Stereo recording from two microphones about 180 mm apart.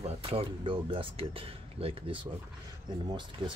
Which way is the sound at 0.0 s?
35° right (ahead or behind).